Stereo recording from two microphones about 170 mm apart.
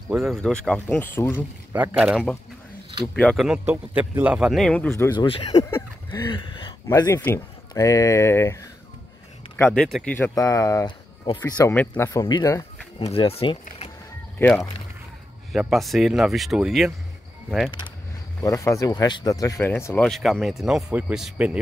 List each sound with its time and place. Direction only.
0.1 s a man's voice: centre (ahead or behind)
1.7 s speech: 10° right (ahead or behind)
3.3 s a man's voice: 5° right (ahead or behind); by 5.1 s 15° left (ahead or behind)
5.1 s speech: 30° left (ahead or behind)
5.6 s a sound: 20° left (ahead or behind)
6.9 s speech: 15° left (ahead or behind)
9.8 s a man's voice: centre (ahead or behind)
10.1 s speech: 15° left (ahead or behind)
13.0 s speech: 35° left (ahead or behind)
14.4 s a man's voice: centre (ahead or behind)
17.6 s speech: 25° left (ahead or behind)
20.1 s a man's voice: centre (ahead or behind)